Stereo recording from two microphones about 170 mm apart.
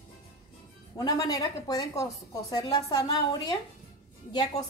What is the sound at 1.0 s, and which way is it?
A woman's voice, 20° left (ahead or behind).